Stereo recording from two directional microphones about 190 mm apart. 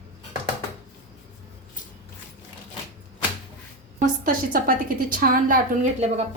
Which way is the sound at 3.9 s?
45° right (ahead or behind).